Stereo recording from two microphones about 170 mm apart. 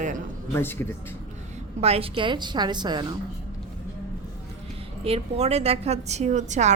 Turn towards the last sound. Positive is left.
turn(degrees=-45)  # may be behind; listen again after turning